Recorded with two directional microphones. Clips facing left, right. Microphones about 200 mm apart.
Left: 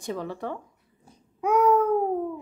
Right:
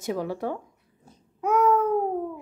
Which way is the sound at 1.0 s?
10° left (ahead or behind).